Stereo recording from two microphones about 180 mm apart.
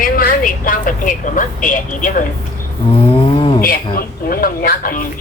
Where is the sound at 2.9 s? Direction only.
30° left (ahead or behind).